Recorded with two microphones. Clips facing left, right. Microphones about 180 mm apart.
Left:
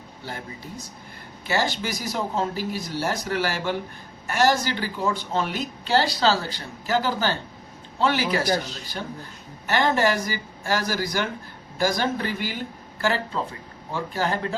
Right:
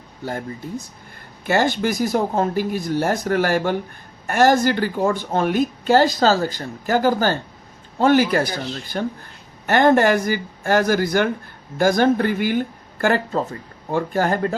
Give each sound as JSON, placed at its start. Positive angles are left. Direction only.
{"t": 1.5, "sound": "speech", "side_deg": -50}